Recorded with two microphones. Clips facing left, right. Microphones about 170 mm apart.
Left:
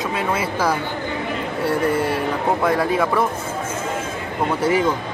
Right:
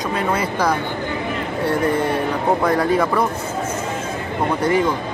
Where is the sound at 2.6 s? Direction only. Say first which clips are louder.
Right 1 dB; centre (ahead or behind).